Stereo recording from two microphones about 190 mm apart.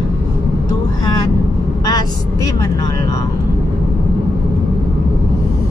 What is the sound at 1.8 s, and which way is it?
Speech, 20° left (ahead or behind).